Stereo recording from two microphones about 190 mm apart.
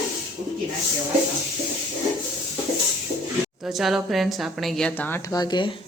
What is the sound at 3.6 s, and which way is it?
A woman's voice, centre (ahead or behind).